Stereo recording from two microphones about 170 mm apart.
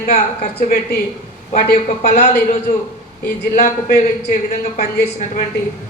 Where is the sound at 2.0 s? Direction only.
35° left (ahead or behind).